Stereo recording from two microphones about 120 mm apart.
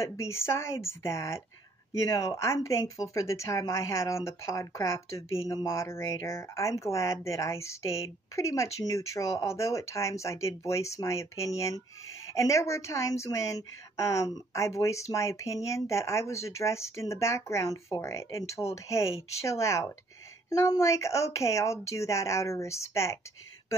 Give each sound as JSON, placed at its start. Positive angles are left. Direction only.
{"t": 0.0, "sound": "a woman's voice", "side_deg": 25}